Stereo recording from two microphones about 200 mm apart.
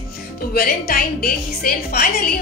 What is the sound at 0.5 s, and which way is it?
A woman's voice, 50° left (ahead or behind).